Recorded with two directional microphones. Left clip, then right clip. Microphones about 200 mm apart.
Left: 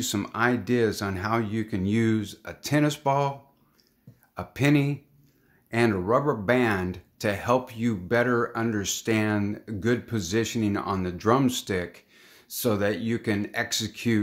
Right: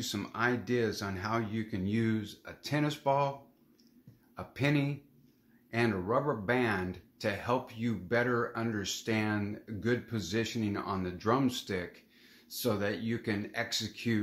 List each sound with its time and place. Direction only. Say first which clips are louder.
0.0 s speech: left 7 dB; 50° left (ahead or behind)
4.4 s speech: left 8 dB; 50° left (ahead or behind)